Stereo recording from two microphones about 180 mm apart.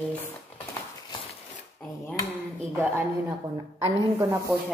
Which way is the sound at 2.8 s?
10° right (ahead or behind).